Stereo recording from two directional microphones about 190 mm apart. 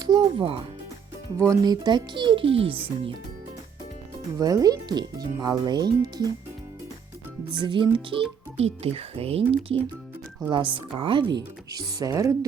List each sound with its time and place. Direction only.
0.0 s speech: 20° right (ahead or behind)
4.4 s speech: 20° right (ahead or behind)
7.6 s speech: 25° right (ahead or behind)